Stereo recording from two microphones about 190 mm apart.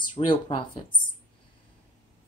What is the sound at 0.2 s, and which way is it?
Speech, 25° left (ahead or behind).